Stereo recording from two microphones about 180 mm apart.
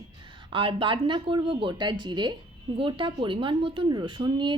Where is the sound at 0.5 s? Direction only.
30° right (ahead or behind).